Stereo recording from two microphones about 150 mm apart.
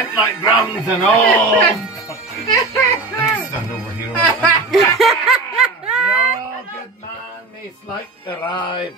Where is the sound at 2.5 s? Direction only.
20° left (ahead or behind).